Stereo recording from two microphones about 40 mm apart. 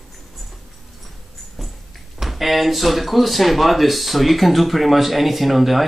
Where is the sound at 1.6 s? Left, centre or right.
Centre.